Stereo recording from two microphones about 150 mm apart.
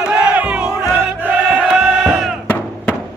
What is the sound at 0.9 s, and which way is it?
Battle cry, 10° right (ahead or behind).